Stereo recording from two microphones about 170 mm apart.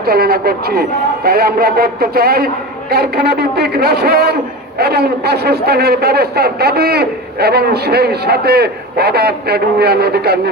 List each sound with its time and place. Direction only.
0.0 s a man's voice: 65° right (ahead or behind)